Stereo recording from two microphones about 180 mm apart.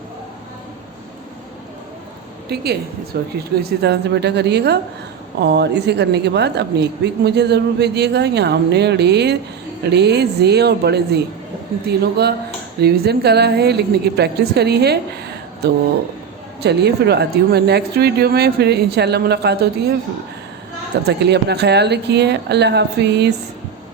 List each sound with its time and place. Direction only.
2.5 s speech: 60° right (ahead or behind)
16.6 s speech: 65° right (ahead or behind)
21.1 s speech: 70° right (ahead or behind)